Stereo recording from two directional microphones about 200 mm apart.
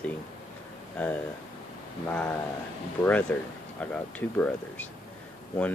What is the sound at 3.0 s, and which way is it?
Speech, 5° left (ahead or behind).